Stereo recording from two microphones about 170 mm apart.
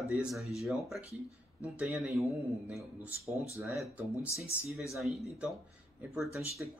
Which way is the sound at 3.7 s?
5° right (ahead or behind).